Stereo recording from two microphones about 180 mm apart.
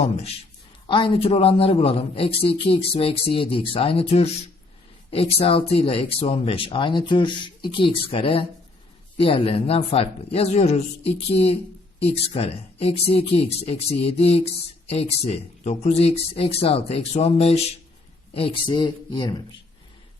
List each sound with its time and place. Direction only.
0.0 s a woman's voice: 35° left (ahead or behind)